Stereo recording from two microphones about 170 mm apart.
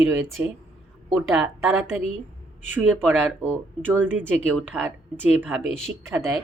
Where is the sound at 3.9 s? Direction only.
10° right (ahead or behind).